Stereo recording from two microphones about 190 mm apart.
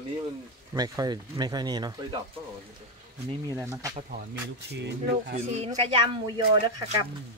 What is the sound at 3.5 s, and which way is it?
Speech, 15° right (ahead or behind).